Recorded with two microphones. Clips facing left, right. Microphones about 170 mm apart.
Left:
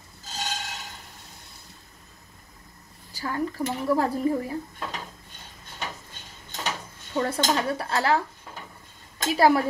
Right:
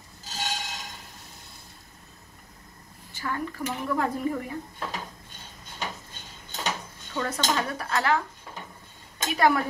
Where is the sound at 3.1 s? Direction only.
35° left (ahead or behind).